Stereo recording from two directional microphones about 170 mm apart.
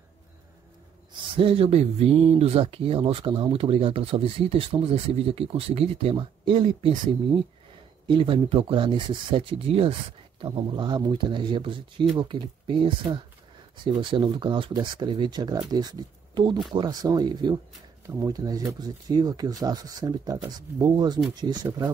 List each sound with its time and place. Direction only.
1.1 s speech: 30° right (ahead or behind)
14.1 s speech: 30° right (ahead or behind)